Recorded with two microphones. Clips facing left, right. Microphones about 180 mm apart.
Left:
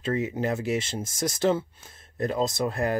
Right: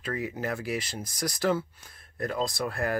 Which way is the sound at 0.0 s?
25° left (ahead or behind).